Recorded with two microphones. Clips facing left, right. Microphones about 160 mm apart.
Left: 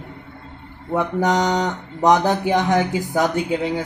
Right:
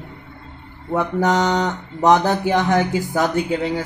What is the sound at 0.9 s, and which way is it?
Speech, 15° left (ahead or behind).